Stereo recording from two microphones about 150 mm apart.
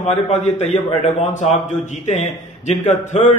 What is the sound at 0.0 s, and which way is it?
A man's voice, 50° left (ahead or behind).